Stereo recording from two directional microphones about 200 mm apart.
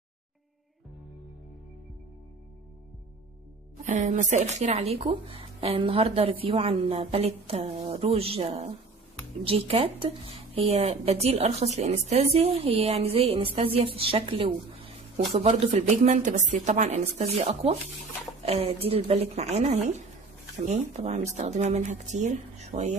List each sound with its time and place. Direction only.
3.8 s speech: 40° right (ahead or behind)